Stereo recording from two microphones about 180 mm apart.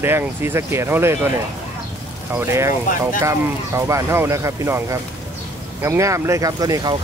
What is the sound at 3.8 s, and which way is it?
Speech, 15° right (ahead or behind).